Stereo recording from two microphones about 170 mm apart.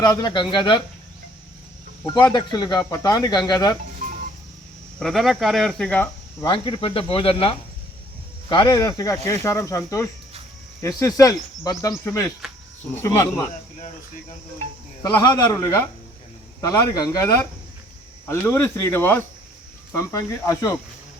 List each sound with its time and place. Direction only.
0.0 s speech: 25° left (ahead or behind)
2.0 s speech: 25° left (ahead or behind)
4.9 s speech: centre (ahead or behind)
6.4 s speech: 30° left (ahead or behind); by 13.4 s 10° left (ahead or behind)
15.0 s speech: 25° left (ahead or behind)